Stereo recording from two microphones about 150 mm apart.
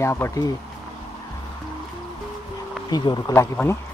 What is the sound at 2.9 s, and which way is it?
Speech, 30° left (ahead or behind).